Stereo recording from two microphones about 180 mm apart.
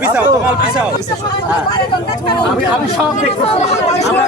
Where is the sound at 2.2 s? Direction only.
25° left (ahead or behind).